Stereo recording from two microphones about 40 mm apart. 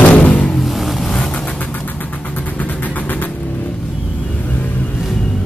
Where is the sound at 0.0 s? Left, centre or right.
Left.